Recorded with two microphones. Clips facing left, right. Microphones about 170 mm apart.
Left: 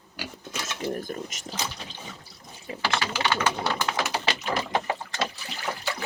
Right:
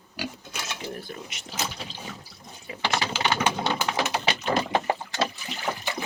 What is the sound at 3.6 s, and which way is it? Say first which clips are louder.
Pigeon: right 1 dB; 20° right (ahead or behind).